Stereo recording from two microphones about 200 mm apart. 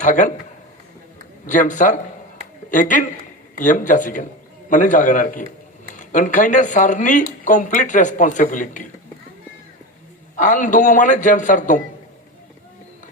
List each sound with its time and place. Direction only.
0.0 s a man's voice: 40° left (ahead or behind)
1.5 s a man's voice: 40° left (ahead or behind)
10.3 s a man's voice: 40° left (ahead or behind)